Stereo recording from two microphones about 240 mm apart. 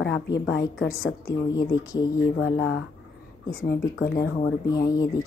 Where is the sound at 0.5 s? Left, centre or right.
Left.